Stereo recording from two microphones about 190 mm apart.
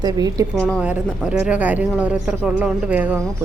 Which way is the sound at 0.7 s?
5° right (ahead or behind).